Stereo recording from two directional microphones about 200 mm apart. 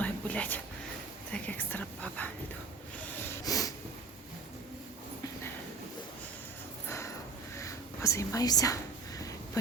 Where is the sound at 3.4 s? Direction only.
15° left (ahead or behind).